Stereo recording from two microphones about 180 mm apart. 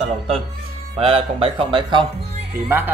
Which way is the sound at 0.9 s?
30° right (ahead or behind).